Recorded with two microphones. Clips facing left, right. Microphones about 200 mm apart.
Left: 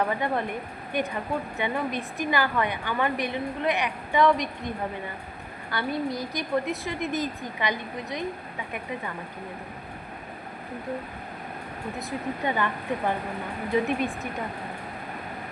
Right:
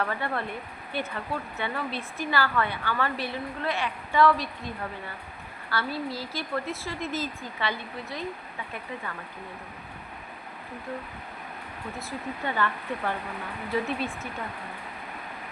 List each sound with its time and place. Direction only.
0.0 s a woman's voice: 15° left (ahead or behind)
5.7 s a woman's voice: 20° left (ahead or behind)
12.5 s a woman's voice: 15° left (ahead or behind)